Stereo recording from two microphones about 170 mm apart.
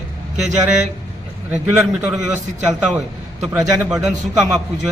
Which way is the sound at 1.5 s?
5° right (ahead or behind).